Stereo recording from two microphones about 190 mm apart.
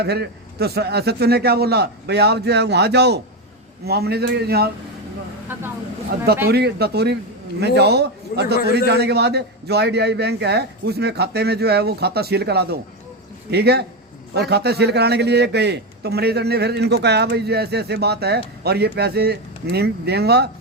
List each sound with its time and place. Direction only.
0.0 s a man's voice: 60° right (ahead or behind)
6.5 s a man's voice: 60° right (ahead or behind)